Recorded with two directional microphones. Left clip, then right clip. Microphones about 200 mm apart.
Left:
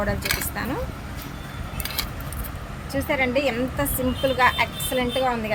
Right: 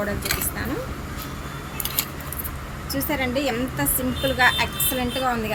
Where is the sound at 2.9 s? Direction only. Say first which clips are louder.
Left 2 dB; 35° left (ahead or behind).